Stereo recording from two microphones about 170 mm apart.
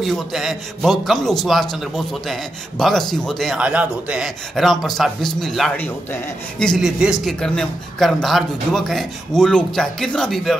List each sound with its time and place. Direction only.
0.0 s a man's voice: centre (ahead or behind)